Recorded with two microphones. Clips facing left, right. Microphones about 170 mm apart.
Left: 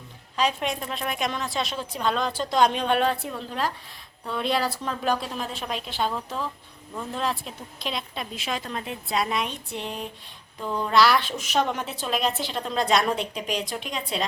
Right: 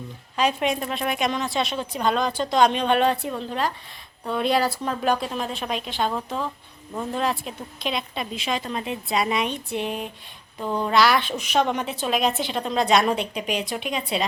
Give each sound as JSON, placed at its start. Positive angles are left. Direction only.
{"t": 0.3, "sound": "a woman's voice", "side_deg": 0}
{"t": 7.2, "sound": "a woman's voice", "side_deg": -5}
{"t": 10.6, "sound": "speech", "side_deg": -25}
{"t": 10.8, "sound": "a woman's voice", "side_deg": 0}